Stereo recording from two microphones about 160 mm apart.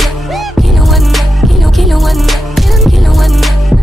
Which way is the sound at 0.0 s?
Centre (ahead or behind).